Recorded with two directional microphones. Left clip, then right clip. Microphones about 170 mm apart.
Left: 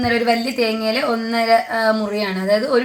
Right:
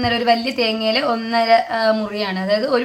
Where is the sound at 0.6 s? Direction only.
35° left (ahead or behind).